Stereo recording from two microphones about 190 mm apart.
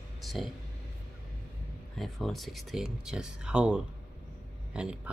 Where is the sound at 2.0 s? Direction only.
Centre (ahead or behind).